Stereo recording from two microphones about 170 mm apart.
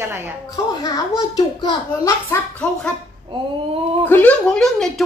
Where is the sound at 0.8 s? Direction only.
20° left (ahead or behind).